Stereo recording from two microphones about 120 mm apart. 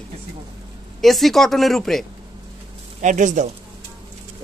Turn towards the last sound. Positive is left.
turn(degrees=-90)